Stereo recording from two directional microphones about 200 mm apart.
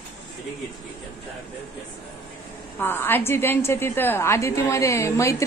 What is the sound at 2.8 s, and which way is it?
A woman's voice, 10° left (ahead or behind).